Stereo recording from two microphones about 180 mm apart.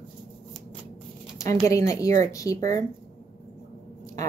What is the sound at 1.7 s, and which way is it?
A woman's voice, 20° left (ahead or behind).